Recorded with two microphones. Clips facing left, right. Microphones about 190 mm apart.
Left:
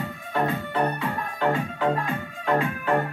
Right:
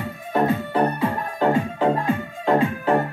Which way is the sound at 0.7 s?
30° right (ahead or behind).